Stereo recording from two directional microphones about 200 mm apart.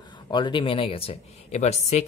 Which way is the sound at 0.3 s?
25° left (ahead or behind).